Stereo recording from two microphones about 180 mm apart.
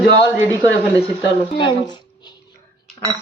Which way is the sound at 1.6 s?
25° left (ahead or behind).